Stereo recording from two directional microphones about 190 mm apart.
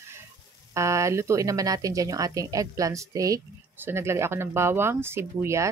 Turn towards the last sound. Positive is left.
turn(degrees=-15)  # may be behind; listen again after turning